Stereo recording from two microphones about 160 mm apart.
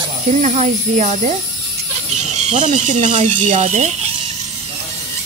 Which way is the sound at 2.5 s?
50° right (ahead or behind).